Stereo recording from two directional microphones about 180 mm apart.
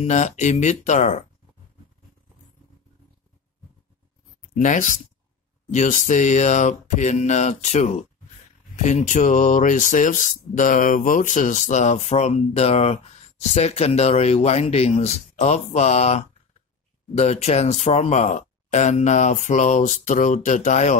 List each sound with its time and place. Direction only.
0.0 s speech: 40° left (ahead or behind)
4.4 s a sound: 45° left (ahead or behind)
5.7 s speech: 45° left (ahead or behind)